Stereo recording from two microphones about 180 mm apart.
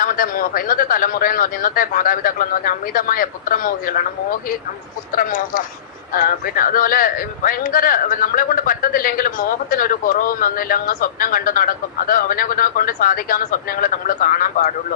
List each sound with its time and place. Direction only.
0.0 s speech: 55° left (ahead or behind)
5.1 s speech: 50° left (ahead or behind)